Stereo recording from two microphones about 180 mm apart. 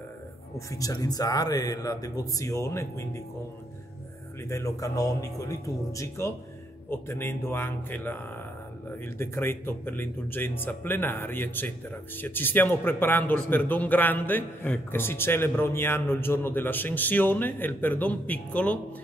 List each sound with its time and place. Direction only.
0.7 s speech: 20° left (ahead or behind)
4.5 s a man's voice: 15° left (ahead or behind)